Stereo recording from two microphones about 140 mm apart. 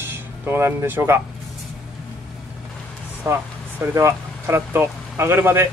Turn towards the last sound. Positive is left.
turn(degrees=-15)  # may be behind; listen again after turning